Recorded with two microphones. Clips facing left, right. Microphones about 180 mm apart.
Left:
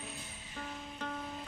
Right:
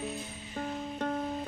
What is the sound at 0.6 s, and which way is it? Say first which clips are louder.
Music: right 9 dB; 45° right (ahead or behind).